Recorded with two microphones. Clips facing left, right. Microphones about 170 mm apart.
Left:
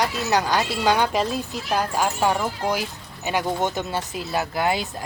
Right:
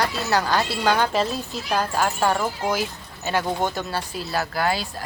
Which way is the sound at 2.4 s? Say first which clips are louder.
Even; 5° right (ahead or behind).